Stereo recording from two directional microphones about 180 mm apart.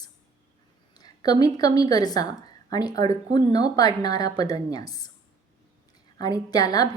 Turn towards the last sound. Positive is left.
turn(degrees=20)  # may be behind; listen again after turning